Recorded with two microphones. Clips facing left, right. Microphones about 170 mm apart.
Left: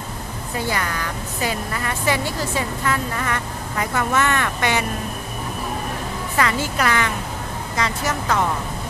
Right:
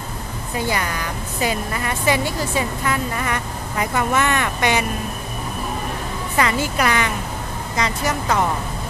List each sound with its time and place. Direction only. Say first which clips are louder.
0.7 s a woman's voice: right 1 dB; 15° right (ahead or behind)
6.3 s a woman's voice: right 2 dB; 20° right (ahead or behind)